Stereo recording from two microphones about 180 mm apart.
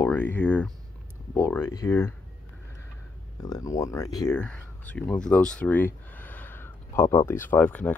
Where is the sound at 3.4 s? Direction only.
20° left (ahead or behind).